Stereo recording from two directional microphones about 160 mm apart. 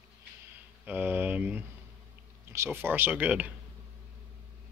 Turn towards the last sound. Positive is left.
turn(degrees=-10)  # may be behind; listen again after turning